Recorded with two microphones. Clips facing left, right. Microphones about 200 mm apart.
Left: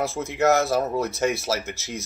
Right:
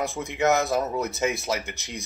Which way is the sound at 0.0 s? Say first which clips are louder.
Left 2 dB; centre (ahead or behind).